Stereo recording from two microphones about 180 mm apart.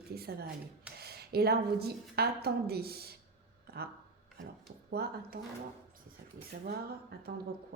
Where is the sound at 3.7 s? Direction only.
60° right (ahead or behind).